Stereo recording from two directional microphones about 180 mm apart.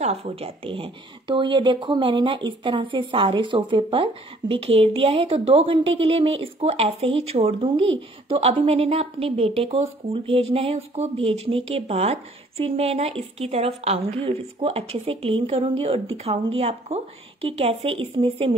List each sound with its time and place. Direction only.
0.0 s speech: 35° right (ahead or behind)